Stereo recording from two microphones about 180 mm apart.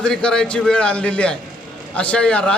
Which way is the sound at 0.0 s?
5° left (ahead or behind).